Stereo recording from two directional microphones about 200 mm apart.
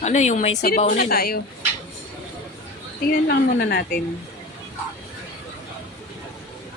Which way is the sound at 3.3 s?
55° left (ahead or behind).